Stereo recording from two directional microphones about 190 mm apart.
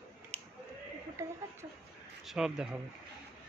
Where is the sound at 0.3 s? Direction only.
35° right (ahead or behind).